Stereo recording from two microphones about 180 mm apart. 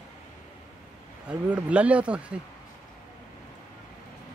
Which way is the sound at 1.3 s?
5° right (ahead or behind).